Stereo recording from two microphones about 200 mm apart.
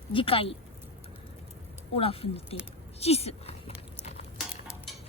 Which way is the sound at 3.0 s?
30° left (ahead or behind).